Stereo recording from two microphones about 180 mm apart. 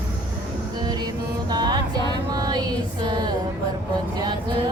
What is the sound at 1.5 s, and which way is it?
Music, 20° right (ahead or behind).